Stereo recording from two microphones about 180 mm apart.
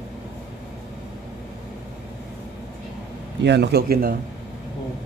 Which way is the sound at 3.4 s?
70° right (ahead or behind).